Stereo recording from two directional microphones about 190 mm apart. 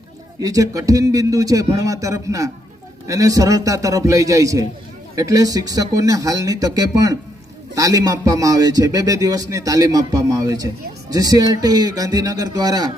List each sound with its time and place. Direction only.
0.4 s a man's voice: 15° right (ahead or behind)